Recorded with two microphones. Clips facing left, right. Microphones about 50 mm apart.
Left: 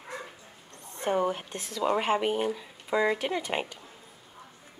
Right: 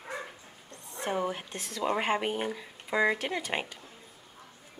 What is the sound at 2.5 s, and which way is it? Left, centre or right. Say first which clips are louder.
Speech: left 2 dB; centre.